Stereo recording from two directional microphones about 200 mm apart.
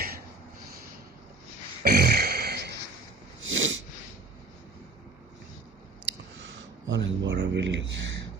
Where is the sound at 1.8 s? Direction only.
50° right (ahead or behind).